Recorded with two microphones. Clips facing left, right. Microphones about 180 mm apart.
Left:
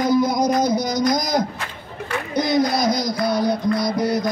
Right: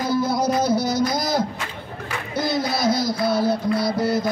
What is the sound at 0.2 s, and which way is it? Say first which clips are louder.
Music: left 3 dB; 15° left (ahead or behind).